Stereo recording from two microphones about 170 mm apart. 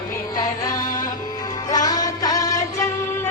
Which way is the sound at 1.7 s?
20° left (ahead or behind).